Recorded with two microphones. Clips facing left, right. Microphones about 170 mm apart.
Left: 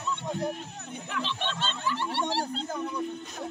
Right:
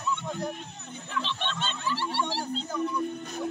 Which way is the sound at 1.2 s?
5° left (ahead or behind).